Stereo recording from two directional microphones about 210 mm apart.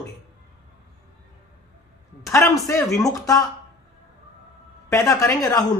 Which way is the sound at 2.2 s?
15° left (ahead or behind).